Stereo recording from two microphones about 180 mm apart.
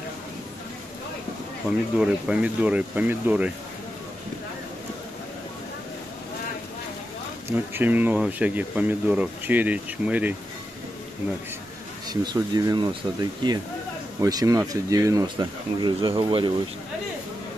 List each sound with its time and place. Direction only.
1.7 s speech: 5° right (ahead or behind)
7.5 s speech: 10° right (ahead or behind)
12.1 s speech: 20° right (ahead or behind)